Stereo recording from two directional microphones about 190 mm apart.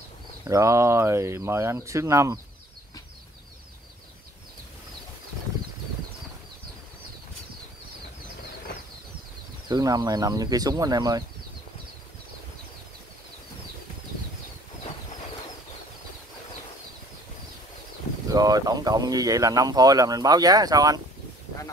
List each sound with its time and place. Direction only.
0.5 s speech: 15° right (ahead or behind)
9.7 s speech: 20° right (ahead or behind)
18.3 s speech: 20° right (ahead or behind)